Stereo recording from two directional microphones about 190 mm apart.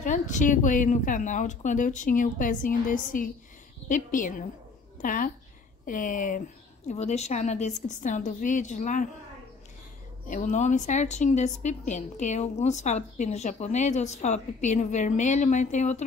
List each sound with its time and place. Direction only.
0.0 s a woman's voice: 40° left (ahead or behind)
10.2 s a woman's voice: 40° left (ahead or behind)